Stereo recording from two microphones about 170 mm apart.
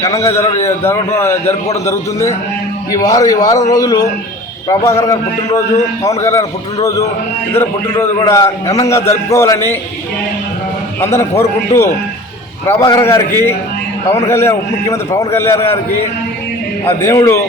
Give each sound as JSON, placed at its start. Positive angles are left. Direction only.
{"t": 0.0, "sound": "a man's voice", "side_deg": 15}
{"t": 11.0, "sound": "a man's voice", "side_deg": 15}
{"t": 13.0, "sound": "a man's voice", "side_deg": 15}
{"t": 17.0, "sound": "a man's voice", "side_deg": 15}